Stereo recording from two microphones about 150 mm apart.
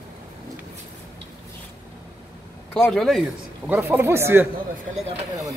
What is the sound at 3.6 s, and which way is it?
Speech, 15° right (ahead or behind).